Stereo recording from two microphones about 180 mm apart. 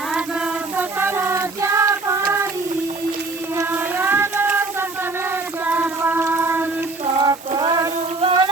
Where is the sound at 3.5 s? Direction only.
10° right (ahead or behind).